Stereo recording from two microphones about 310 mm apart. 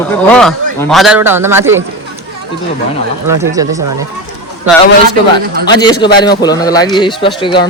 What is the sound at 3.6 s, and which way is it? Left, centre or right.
Speech, centre.